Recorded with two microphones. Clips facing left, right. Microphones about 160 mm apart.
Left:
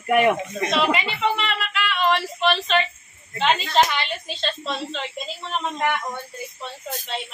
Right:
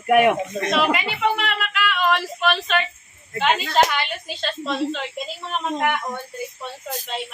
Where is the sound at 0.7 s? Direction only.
5° right (ahead or behind).